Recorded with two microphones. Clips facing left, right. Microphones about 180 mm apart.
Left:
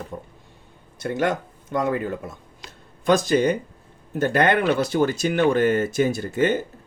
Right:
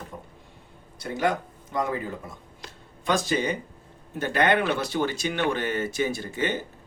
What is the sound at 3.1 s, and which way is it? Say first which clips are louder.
Speech: left 7 dB; 45° left (ahead or behind).